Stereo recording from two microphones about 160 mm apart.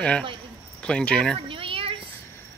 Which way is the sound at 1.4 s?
35° right (ahead or behind).